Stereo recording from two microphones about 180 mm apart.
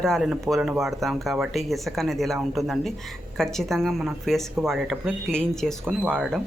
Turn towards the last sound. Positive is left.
turn(degrees=0)  # may be behind; listen again after turning